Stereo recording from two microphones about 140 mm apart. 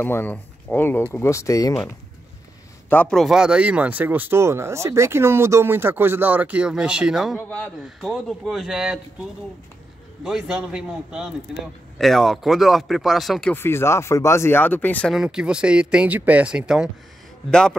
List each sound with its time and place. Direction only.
0.0 s speech: 15° left (ahead or behind)
2.9 s speech: 10° left (ahead or behind)
7.3 s speech: 10° left (ahead or behind)
7.8 s a man's voice: centre (ahead or behind)
10.2 s a man's voice: 5° right (ahead or behind)
13.5 s speech: 15° left (ahead or behind)
15.1 s speech: 5° right (ahead or behind)
17.5 s a man's voice: 5° left (ahead or behind)